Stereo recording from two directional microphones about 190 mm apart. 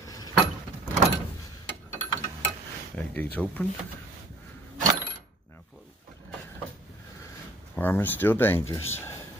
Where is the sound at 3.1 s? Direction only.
10° left (ahead or behind).